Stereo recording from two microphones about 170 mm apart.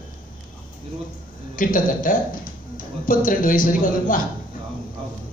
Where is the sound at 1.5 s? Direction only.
55° left (ahead or behind).